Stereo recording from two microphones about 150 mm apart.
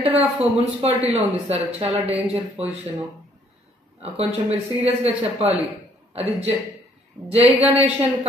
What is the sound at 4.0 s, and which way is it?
A man's voice, 45° right (ahead or behind).